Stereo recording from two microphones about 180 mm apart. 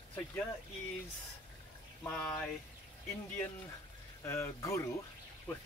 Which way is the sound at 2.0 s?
5° left (ahead or behind).